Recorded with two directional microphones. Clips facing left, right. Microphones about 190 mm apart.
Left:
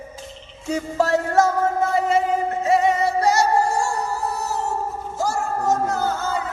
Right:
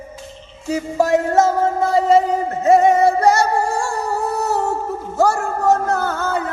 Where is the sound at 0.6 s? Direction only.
10° right (ahead or behind); by 2.2 s 35° right (ahead or behind).